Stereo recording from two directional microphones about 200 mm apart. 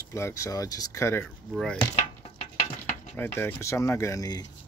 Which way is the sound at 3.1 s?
10° left (ahead or behind).